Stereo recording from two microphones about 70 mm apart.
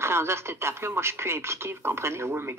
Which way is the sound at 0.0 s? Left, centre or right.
Right.